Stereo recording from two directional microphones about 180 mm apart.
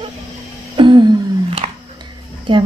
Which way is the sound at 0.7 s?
25° right (ahead or behind).